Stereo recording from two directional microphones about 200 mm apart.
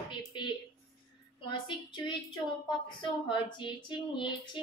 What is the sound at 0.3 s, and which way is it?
Speech, 25° left (ahead or behind).